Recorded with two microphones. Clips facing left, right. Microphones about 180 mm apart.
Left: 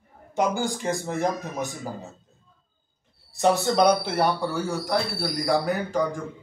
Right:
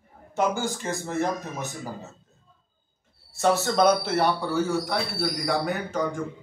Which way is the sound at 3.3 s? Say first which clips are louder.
Left 1 dB; 15° left (ahead or behind).